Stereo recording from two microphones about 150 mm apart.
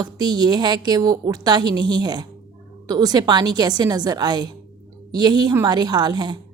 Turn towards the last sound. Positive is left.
turn(degrees=-25)  # may be behind; listen again after turning